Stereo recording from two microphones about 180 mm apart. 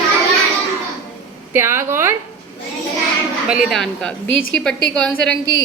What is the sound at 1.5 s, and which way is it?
Speech, 15° right (ahead or behind).